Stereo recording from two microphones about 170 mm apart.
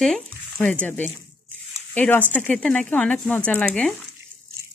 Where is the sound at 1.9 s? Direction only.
10° left (ahead or behind).